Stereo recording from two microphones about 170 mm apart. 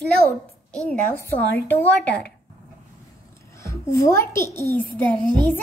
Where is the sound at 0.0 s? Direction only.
5° left (ahead or behind).